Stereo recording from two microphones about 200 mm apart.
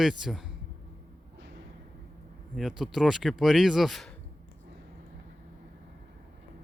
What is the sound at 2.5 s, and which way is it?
Speech, centre (ahead or behind).